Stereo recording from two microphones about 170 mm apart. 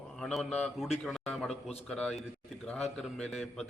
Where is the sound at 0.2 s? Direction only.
5° left (ahead or behind).